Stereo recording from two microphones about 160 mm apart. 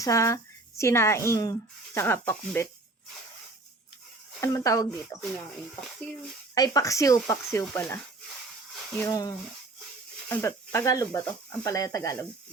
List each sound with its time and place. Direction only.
0.0 s speech: 20° left (ahead or behind)
4.4 s speech: 20° left (ahead or behind)
6.5 s speech: 20° left (ahead or behind)
7.8 s speech: 10° left (ahead or behind)
9.0 s speech: 20° left (ahead or behind)